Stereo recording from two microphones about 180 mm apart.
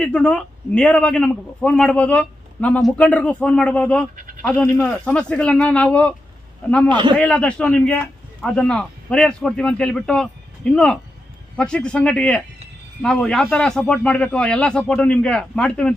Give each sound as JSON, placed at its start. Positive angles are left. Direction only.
{"t": 0.0, "sound": "a man's voice", "side_deg": 5}
{"t": 6.8, "sound": "a man's voice", "side_deg": -25}
{"t": 7.2, "sound": "a man's voice", "side_deg": 5}